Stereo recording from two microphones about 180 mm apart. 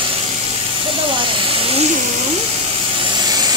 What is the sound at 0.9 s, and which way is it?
Hiss, 30° right (ahead or behind).